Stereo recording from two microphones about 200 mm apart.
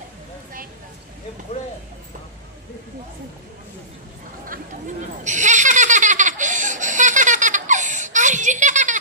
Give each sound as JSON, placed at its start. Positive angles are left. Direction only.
{"t": 5.2, "sound": "laughter", "side_deg": -40}